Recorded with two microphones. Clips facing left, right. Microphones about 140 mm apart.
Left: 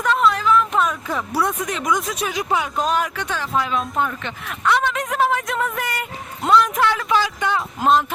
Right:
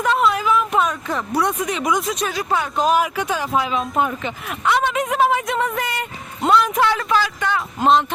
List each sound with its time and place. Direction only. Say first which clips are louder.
0.0 s a sound: even; 5° right (ahead or behind)
2.2 s speech: even; 15° left (ahead or behind)
2.7 s speech: right 3 dB; 5° right (ahead or behind)
7.1 s speech: even; 15° left (ahead or behind)
7.8 s speech: right 2 dB; 5° left (ahead or behind)